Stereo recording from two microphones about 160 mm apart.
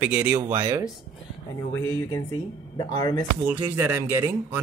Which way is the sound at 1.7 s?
25° left (ahead or behind).